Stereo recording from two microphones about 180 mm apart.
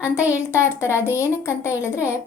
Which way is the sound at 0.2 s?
15° left (ahead or behind).